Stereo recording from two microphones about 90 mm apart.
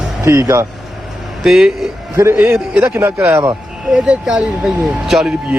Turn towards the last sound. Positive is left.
turn(degrees=-5)  # may be behind; listen again after turning